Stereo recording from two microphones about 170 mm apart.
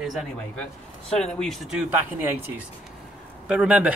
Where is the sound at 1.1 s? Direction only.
5° left (ahead or behind).